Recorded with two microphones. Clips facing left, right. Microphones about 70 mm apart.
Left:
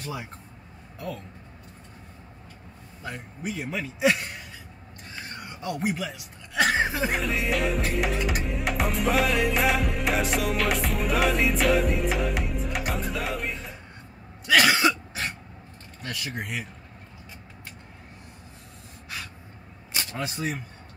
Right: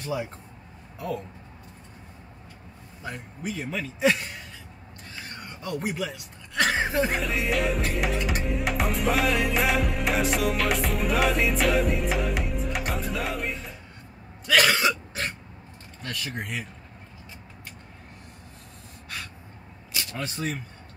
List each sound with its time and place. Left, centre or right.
0.0 s speech: centre
3.0 s speech: centre
5.4 s speech: centre
14.4 s throat clearing: centre
16.0 s speech: centre
19.9 s single-lens reflex camera: left
20.2 s speech: centre